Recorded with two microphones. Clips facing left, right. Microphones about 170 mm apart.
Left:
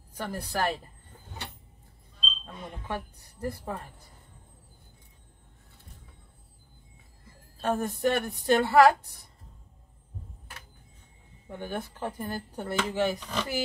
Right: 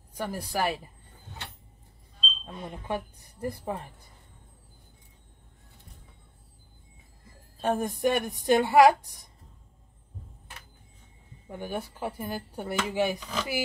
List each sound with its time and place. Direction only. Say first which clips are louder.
0.2 s speech: right 1 dB; 10° right (ahead or behind)
2.4 s speech: right 3 dB; 15° right (ahead or behind)
7.6 s speech: right 1 dB; 15° right (ahead or behind)
11.4 s speech: right 1 dB; 10° right (ahead or behind)